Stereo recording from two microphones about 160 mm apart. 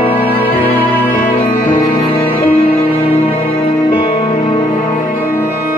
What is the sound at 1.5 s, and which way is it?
Music, 60° left (ahead or behind).